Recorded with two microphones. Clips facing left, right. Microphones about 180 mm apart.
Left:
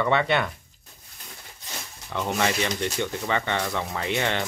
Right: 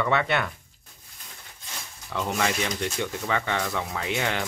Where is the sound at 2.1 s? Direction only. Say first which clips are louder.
Left 1 dB; centre (ahead or behind).